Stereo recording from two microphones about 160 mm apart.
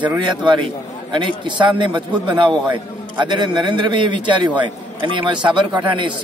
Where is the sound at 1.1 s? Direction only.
30° right (ahead or behind).